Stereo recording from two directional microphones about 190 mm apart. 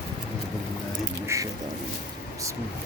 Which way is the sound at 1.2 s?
15° right (ahead or behind).